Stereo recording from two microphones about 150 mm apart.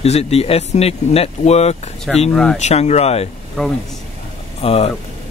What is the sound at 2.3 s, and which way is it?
Speech, 5° left (ahead or behind).